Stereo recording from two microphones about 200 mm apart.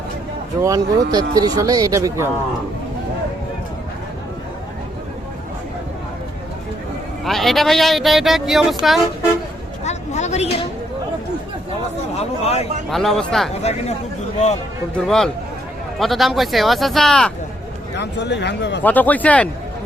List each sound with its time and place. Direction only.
0.6 s speech: 15° right (ahead or behind)
7.3 s speech: centre (ahead or behind)
9.8 s a sound: 35° left (ahead or behind)
12.9 s speech: centre (ahead or behind)
13.6 s speech: 30° left (ahead or behind)
14.9 s speech: centre (ahead or behind)
17.9 s speech: 60° left (ahead or behind)
18.8 s speech: 10° left (ahead or behind)